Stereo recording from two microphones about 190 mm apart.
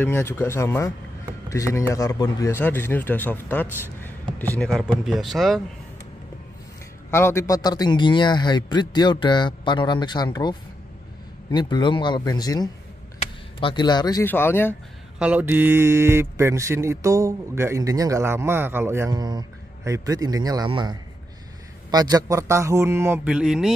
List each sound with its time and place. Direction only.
0.0 s speech: 10° left (ahead or behind)
3.8 s a sound: 10° left (ahead or behind)
4.9 s speech: centre (ahead or behind)
7.1 s a man's voice: 15° left (ahead or behind)
14.2 s speech: 10° left (ahead or behind)
15.1 s speech: 5° right (ahead or behind); by 20.9 s 25° right (ahead or behind)
21.9 s speech: 20° right (ahead or behind); by 23.7 s centre (ahead or behind)